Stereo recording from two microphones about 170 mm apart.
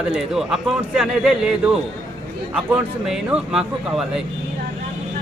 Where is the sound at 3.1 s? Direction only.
5° right (ahead or behind).